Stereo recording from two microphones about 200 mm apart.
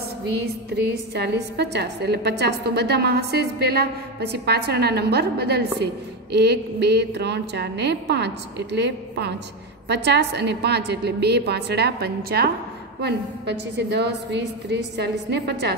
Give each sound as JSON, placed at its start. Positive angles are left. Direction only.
{"t": 0.7, "sound": "a woman's voice", "side_deg": -55}